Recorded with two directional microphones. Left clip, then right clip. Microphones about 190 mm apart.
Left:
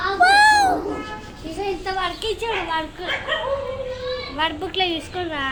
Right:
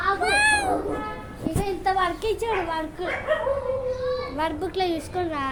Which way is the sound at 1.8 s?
20° right (ahead or behind).